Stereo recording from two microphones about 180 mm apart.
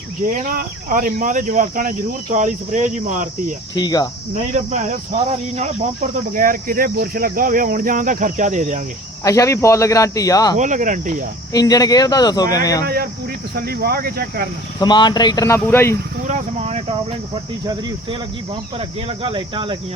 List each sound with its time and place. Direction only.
0.3 s speech: 50° right (ahead or behind)
3.8 s speech: 20° left (ahead or behind)
4.4 s speech: 40° right (ahead or behind)
9.2 s speech: 15° left (ahead or behind)
10.6 s speech: 45° right (ahead or behind)
11.5 s speech: 20° left (ahead or behind)
12.8 s speech: 60° right (ahead or behind)
14.8 s speech: 25° left (ahead or behind)
16.2 s speech: 40° right (ahead or behind)
17.3 s speech: 25° right (ahead or behind)